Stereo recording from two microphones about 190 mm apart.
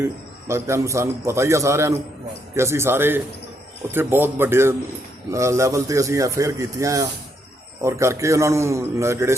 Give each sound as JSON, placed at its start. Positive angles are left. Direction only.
{"t": 0.0, "sound": "a man's voice", "side_deg": -15}